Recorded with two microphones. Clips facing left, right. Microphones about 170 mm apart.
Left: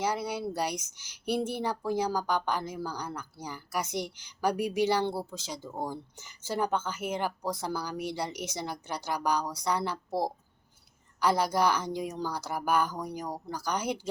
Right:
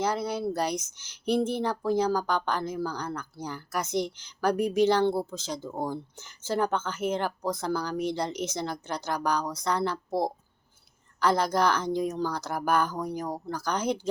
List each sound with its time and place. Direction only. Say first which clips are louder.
0.0 s speech: right 3 dB; 15° left (ahead or behind)
10.1 s speech: right 1 dB; 15° right (ahead or behind)
11.2 s speech: right 2 dB; 10° left (ahead or behind)